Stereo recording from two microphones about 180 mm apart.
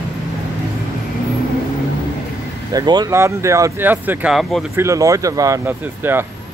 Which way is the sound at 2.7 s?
20° right (ahead or behind).